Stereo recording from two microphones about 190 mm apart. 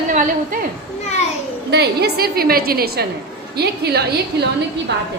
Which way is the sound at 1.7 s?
60° right (ahead or behind).